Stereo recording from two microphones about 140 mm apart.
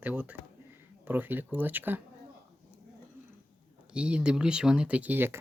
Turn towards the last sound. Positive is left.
turn(degrees=-15)  # may be behind; listen again after turning